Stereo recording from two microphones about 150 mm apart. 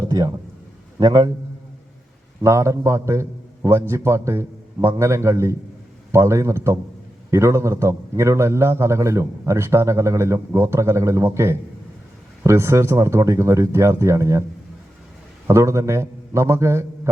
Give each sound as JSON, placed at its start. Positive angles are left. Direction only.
{"t": 0.1, "sound": "a sound", "side_deg": -25}
{"t": 0.9, "sound": "a man's voice", "side_deg": -25}
{"t": 2.4, "sound": "a man's voice", "side_deg": -20}
{"t": 15.4, "sound": "a man's voice", "side_deg": -20}